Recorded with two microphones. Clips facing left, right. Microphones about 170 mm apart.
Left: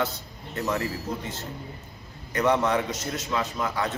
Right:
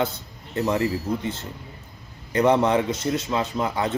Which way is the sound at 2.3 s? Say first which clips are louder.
Right 4 dB; 25° right (ahead or behind).